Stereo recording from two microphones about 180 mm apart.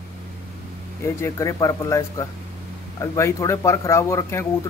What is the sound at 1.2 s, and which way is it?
A man's voice, 15° left (ahead or behind).